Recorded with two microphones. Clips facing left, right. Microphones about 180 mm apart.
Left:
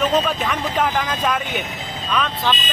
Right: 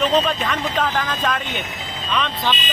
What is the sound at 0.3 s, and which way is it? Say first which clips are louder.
Speech: even; 10° left (ahead or behind).